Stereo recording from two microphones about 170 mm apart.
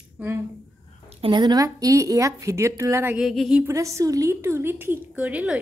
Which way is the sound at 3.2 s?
Centre (ahead or behind).